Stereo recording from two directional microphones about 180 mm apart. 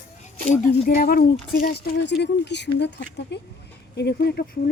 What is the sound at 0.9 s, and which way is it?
Speech, 50° left (ahead or behind).